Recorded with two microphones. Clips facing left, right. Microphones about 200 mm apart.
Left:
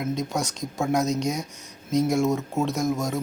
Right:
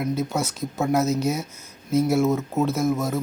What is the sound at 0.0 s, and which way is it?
Speech, 5° right (ahead or behind).